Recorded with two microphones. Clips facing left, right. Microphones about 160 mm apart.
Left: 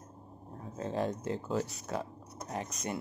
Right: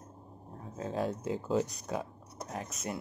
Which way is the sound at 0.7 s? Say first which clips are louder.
Even; 5° right (ahead or behind).